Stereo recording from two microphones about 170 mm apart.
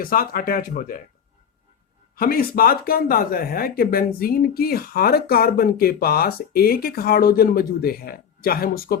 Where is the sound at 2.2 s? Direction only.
60° left (ahead or behind).